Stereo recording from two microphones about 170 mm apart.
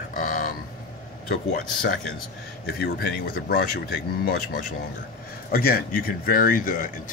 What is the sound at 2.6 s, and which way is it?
Speech, 65° left (ahead or behind).